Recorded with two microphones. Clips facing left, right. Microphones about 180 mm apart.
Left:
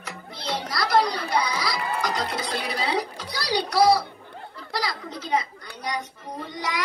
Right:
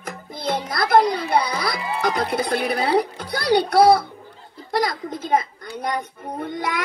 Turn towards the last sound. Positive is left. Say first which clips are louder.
# right 4 dB
turn(degrees=-55)  # may be behind; listen again after turning